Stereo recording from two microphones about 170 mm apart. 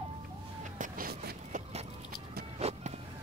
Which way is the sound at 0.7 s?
60° right (ahead or behind).